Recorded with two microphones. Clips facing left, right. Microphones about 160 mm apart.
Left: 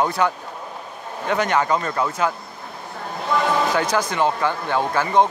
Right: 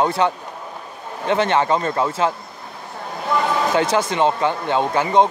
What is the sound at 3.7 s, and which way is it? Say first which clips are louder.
Speech: right 3 dB; 25° right (ahead or behind).